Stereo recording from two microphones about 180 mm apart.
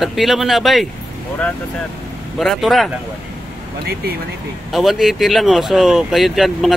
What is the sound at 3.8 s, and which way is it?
Speech, 60° right (ahead or behind).